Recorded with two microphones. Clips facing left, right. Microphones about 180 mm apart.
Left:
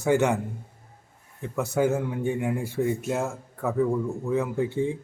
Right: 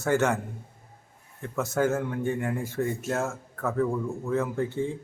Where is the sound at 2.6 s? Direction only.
15° left (ahead or behind).